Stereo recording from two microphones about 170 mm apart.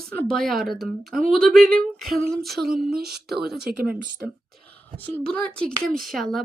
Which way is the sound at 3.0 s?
70° right (ahead or behind).